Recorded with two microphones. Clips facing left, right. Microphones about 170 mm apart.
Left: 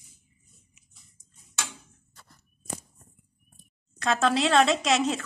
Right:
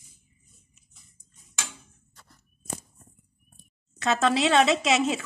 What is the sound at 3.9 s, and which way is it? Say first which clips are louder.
Speech: right 1 dB; centre (ahead or behind).